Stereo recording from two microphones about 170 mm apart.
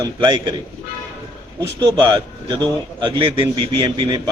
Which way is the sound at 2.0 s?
25° right (ahead or behind).